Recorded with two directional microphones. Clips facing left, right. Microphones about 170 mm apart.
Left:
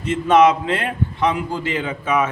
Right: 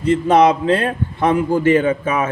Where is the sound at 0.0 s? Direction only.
35° right (ahead or behind).